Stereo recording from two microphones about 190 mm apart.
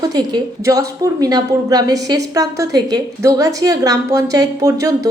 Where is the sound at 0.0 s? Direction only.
20° right (ahead or behind).